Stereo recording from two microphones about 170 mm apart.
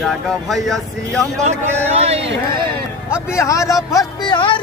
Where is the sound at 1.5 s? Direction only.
40° right (ahead or behind).